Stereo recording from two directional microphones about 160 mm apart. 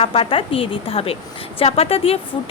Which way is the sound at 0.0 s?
35° left (ahead or behind).